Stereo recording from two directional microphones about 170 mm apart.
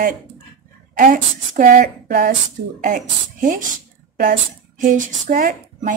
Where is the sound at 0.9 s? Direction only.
50° right (ahead or behind).